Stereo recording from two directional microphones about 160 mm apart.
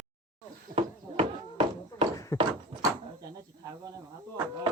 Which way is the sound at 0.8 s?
35° right (ahead or behind).